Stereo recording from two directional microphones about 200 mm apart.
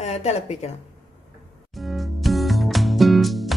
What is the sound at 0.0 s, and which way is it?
Speech, 30° left (ahead or behind).